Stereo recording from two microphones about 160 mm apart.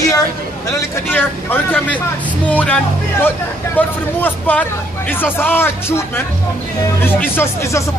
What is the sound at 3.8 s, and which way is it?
Speech, 10° left (ahead or behind).